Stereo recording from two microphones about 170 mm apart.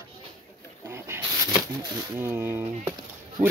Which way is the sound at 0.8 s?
15° right (ahead or behind).